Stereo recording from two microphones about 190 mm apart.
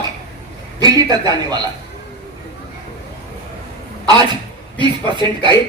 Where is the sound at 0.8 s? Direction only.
20° right (ahead or behind).